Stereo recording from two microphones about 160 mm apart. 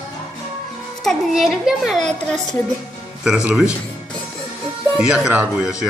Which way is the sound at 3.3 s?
5° right (ahead or behind).